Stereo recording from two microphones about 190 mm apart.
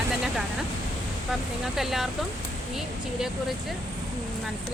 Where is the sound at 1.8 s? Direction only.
Centre (ahead or behind).